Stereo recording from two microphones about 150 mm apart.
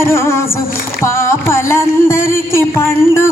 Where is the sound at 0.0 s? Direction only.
15° left (ahead or behind).